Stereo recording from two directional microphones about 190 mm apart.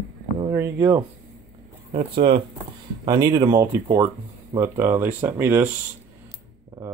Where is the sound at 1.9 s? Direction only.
30° right (ahead or behind); by 5.7 s 10° right (ahead or behind).